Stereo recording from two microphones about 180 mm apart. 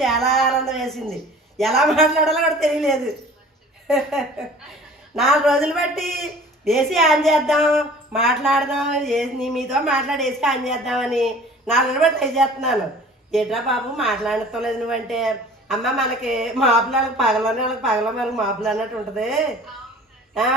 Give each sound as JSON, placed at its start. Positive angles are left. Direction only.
{"t": 0.0, "sound": "a man's voice", "side_deg": 0}